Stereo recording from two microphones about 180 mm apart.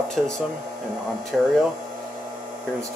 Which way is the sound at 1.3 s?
Centre (ahead or behind).